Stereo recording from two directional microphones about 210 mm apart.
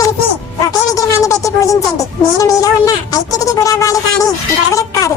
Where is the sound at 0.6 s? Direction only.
15° left (ahead or behind).